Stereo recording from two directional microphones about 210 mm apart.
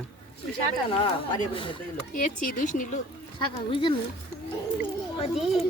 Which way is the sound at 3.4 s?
20° left (ahead or behind).